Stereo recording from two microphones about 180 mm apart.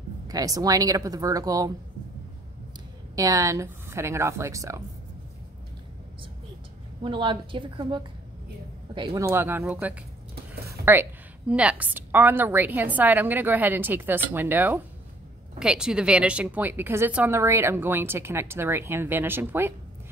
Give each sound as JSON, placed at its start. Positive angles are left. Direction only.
{"t": 0.3, "sound": "speech", "side_deg": -20}
{"t": 3.2, "sound": "a woman's voice", "side_deg": -20}
{"t": 7.0, "sound": "speech", "side_deg": -25}
{"t": 9.2, "sound": "a woman's voice", "side_deg": -15}